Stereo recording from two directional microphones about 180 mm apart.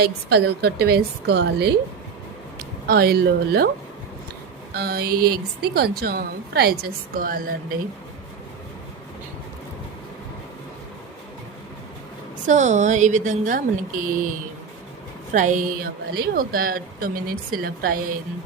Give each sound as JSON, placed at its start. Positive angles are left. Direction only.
{"t": 0.0, "sound": "a woman's voice", "side_deg": -65}
{"t": 4.7, "sound": "a woman's voice", "side_deg": -60}
{"t": 12.5, "sound": "a woman's voice", "side_deg": -40}
{"t": 15.3, "sound": "a woman's voice", "side_deg": -45}